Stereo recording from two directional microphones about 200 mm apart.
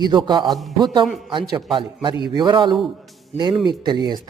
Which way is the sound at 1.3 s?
25° right (ahead or behind).